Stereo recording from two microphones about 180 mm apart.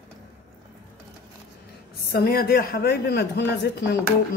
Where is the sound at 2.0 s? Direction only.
60° left (ahead or behind).